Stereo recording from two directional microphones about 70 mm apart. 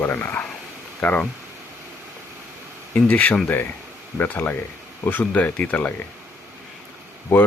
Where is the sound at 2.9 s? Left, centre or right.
Left.